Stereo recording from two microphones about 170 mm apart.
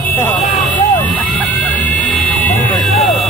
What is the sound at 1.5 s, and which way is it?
Vehicle, 10° left (ahead or behind).